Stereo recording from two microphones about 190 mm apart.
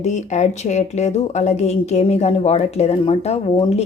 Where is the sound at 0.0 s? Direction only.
40° left (ahead or behind).